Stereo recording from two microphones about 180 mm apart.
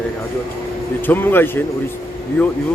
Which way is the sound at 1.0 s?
10° left (ahead or behind).